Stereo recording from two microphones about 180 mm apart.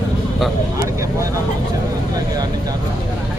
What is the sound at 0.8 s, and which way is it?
Speech, 15° right (ahead or behind).